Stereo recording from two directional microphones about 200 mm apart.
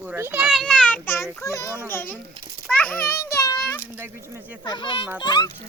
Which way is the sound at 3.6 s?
10° left (ahead or behind).